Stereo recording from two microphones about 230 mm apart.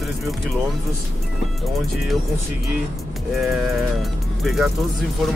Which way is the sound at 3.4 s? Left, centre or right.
Centre.